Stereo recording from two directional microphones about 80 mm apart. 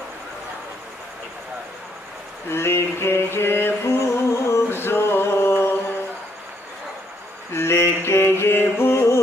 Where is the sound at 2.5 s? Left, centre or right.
Left.